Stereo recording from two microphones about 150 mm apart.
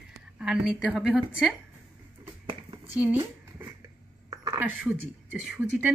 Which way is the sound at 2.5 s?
35° right (ahead or behind).